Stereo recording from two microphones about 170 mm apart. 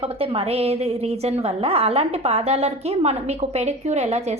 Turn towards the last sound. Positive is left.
turn(degrees=-40)  # may be behind; listen again after turning